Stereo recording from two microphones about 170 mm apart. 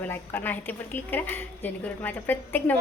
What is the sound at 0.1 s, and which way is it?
A woman's voice, 10° left (ahead or behind).